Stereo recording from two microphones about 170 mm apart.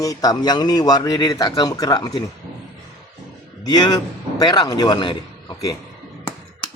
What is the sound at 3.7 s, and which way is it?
A man's voice, 25° left (ahead or behind).